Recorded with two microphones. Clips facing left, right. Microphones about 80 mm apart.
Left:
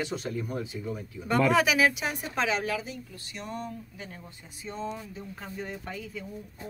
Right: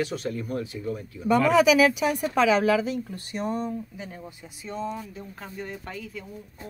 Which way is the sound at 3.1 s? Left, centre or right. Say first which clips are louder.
Right 9 dB; right.